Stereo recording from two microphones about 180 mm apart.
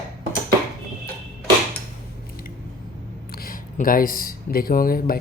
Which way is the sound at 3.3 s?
55° left (ahead or behind).